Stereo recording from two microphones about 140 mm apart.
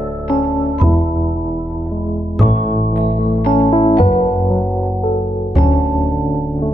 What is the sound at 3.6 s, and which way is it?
Music, 45° left (ahead or behind).